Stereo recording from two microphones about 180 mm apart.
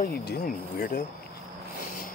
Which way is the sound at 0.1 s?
65° left (ahead or behind).